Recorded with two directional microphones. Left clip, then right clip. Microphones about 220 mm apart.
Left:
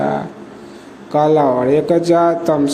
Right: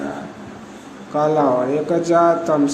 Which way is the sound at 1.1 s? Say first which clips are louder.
Left 4 dB; 20° left (ahead or behind).